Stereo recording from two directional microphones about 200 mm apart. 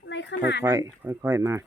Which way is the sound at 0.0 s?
60° left (ahead or behind).